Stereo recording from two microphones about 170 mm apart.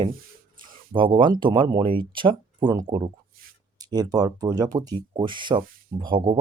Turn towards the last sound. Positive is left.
turn(degrees=-25)  # may be behind; listen again after turning